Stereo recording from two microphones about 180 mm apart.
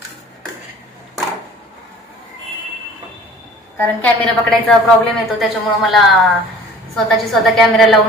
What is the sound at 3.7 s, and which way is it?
A woman's voice, 10° left (ahead or behind).